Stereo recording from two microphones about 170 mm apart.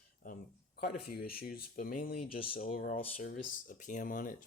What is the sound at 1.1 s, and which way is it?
Speech, 60° left (ahead or behind).